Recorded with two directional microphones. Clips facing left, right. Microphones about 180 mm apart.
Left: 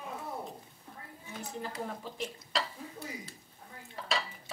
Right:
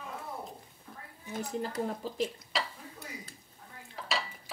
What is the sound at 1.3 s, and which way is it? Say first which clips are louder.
Speech: right 5 dB; 40° right (ahead or behind).